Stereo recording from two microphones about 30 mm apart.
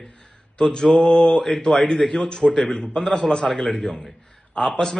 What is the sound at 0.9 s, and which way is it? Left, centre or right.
Mantra, left.